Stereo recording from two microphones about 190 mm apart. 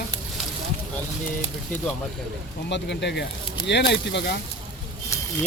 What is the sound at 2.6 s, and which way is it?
Speech, 65° left (ahead or behind).